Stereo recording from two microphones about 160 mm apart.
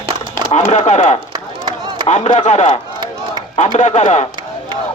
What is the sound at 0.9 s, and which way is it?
Speech, 45° left (ahead or behind).